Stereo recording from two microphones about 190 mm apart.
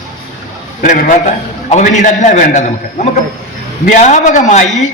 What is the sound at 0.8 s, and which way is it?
A man's voice, 45° left (ahead or behind).